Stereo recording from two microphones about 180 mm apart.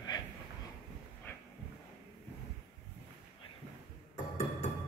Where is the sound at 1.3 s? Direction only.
10° left (ahead or behind).